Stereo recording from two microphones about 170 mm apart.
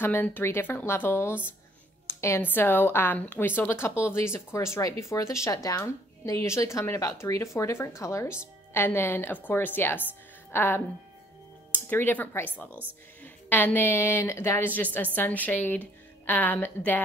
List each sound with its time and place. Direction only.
0.0 s a woman's voice: 10° left (ahead or behind)